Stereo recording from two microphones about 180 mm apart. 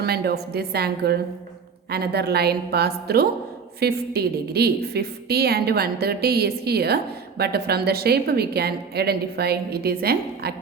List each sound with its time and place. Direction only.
0.0 s a woman's voice: 60° right (ahead or behind)